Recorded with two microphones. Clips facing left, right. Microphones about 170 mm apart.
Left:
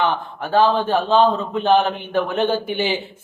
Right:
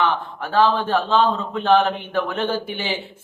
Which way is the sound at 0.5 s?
20° left (ahead or behind).